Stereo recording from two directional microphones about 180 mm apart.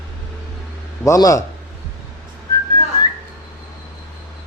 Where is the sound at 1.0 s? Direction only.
15° left (ahead or behind).